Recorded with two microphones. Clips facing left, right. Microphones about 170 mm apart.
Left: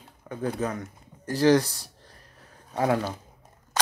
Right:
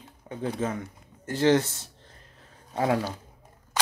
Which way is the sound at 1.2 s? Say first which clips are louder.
Left 2 dB; 25° right (ahead or behind).